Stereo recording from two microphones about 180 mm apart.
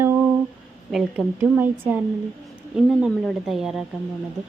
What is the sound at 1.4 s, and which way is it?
A woman's voice, 10° right (ahead or behind).